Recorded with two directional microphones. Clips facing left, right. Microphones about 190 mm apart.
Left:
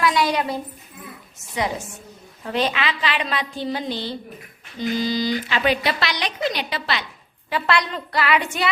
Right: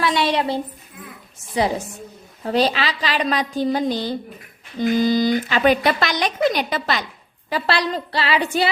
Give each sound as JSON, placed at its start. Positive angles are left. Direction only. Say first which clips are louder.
{"t": 0.0, "sound": "a sound", "louder": "right 1 dB", "side_deg": -30}
{"t": 1.5, "sound": "a woman's voice", "louder": "right 5 dB", "side_deg": -30}
{"t": 7.5, "sound": "a woman's voice", "louder": "right 1 dB", "side_deg": -35}